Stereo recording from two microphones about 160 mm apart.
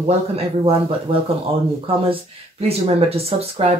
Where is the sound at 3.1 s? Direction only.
40° right (ahead or behind).